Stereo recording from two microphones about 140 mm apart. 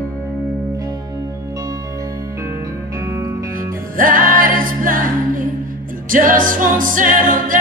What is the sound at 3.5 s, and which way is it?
Music, 80° right.